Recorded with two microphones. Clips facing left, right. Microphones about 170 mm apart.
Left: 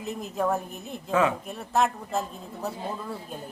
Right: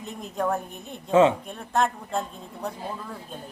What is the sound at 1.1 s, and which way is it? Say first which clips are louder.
Speech: right 6 dB; 25° right (ahead or behind).